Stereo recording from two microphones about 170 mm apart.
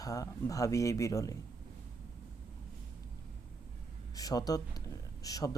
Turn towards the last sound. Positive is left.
turn(degrees=20)  # may be behind; listen again after turning